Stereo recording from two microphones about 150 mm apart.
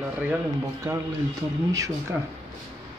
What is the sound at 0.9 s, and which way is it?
Speech, 25° right (ahead or behind).